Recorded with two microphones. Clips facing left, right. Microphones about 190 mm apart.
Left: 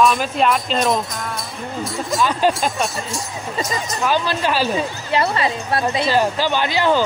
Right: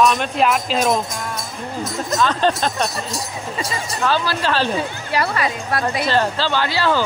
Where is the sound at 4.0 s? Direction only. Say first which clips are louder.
Even; 20° left (ahead or behind).